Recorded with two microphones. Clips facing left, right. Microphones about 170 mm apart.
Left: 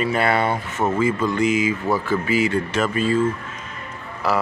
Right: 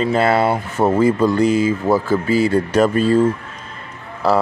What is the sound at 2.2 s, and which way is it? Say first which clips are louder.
Speech: right 4 dB; 35° right (ahead or behind).